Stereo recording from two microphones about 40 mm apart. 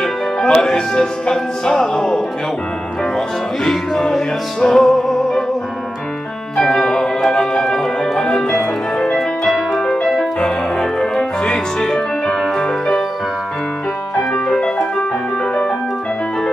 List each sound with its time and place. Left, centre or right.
0.0 s speech: centre
4.8 s music: centre
6.5 s music: centre
9.4 s music: centre
10.0 s music: centre
10.8 s music: centre
14.3 s music: centre